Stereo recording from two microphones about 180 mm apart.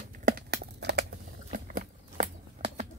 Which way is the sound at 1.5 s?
50° right (ahead or behind).